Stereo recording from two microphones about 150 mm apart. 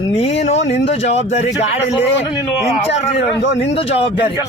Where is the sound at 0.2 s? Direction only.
45° left (ahead or behind).